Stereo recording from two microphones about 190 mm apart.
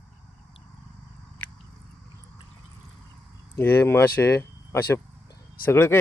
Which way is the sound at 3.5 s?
10° left (ahead or behind).